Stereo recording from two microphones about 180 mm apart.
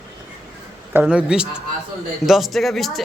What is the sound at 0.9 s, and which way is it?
A man's voice, 5° right (ahead or behind).